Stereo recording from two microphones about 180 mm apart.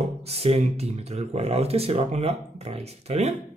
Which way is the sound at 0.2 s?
35° right (ahead or behind).